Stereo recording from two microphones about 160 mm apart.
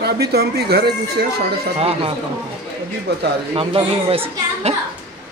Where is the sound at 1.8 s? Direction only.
35° right (ahead or behind).